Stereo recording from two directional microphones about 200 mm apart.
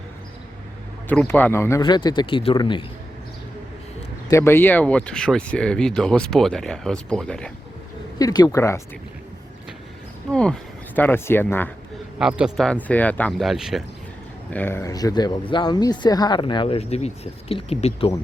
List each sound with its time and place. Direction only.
1.0 s speech: 5° left (ahead or behind); by 2.8 s 25° left (ahead or behind)
4.3 s speech: 10° left (ahead or behind)
8.2 s speech: 20° left (ahead or behind)
10.3 s speech: 5° left (ahead or behind)
12.2 s speech: centre (ahead or behind)
14.5 s speech: 10° left (ahead or behind); by 18.1 s 30° left (ahead or behind)